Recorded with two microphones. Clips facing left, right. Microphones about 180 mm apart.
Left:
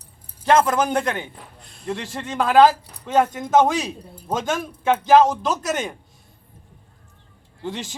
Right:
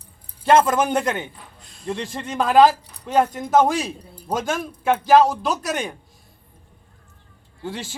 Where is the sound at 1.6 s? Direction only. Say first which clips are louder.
Left 1 dB; 55° left (ahead or behind).